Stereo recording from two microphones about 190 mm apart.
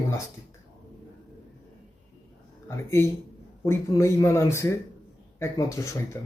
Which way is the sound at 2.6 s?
15° left (ahead or behind).